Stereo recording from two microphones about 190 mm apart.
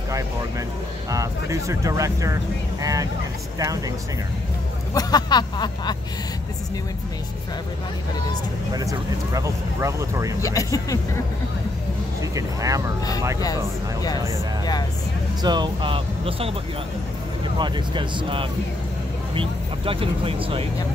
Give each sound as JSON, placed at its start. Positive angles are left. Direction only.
{"t": 1.1, "sound": "speech", "side_deg": -15}
{"t": 4.9, "sound": "a sound", "side_deg": 20}
{"t": 8.7, "sound": "speech", "side_deg": -20}
{"t": 10.4, "sound": "speech", "side_deg": 15}
{"t": 12.2, "sound": "speech", "side_deg": -15}
{"t": 15.4, "sound": "speech", "side_deg": -25}
{"t": 17.6, "sound": "speech", "side_deg": -25}